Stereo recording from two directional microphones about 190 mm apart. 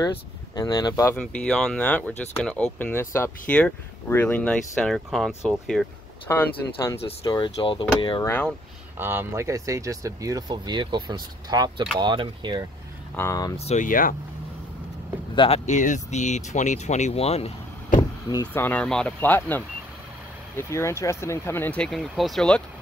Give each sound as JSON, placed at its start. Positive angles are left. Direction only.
{"t": 0.0, "sound": "speech", "side_deg": 20}
{"t": 1.1, "sound": "speech", "side_deg": 5}
{"t": 7.2, "sound": "speech", "side_deg": 25}
{"t": 8.3, "sound": "speech", "side_deg": 10}
{"t": 8.9, "sound": "speech", "side_deg": -10}
{"t": 13.1, "sound": "speech", "side_deg": 15}
{"t": 13.6, "sound": "speech", "side_deg": 35}
{"t": 15.3, "sound": "speech", "side_deg": 30}
{"t": 18.3, "sound": "speech", "side_deg": 15}